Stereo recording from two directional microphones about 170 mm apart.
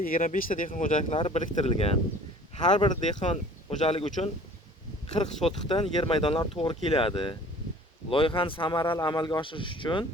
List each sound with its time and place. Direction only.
0.0 s speech: 55° left (ahead or behind)
1.1 s speech: 35° left (ahead or behind)
2.7 s a man's voice: 25° left (ahead or behind)
3.2 s a man's voice: 40° left (ahead or behind)